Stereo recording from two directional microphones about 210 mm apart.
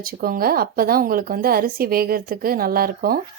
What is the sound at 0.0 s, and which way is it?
Speech, 45° right (ahead or behind).